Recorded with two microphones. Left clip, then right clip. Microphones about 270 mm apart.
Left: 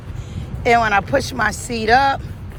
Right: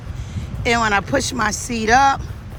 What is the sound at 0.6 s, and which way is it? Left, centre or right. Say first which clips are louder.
Speech: left 3 dB; centre.